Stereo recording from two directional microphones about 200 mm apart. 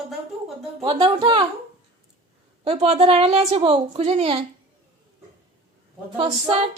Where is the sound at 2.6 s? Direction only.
30° right (ahead or behind).